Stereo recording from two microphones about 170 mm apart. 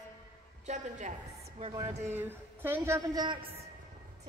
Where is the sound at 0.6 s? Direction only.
45° right (ahead or behind).